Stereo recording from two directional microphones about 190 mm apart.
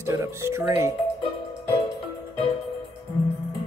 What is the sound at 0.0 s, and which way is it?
Speech, 15° right (ahead or behind).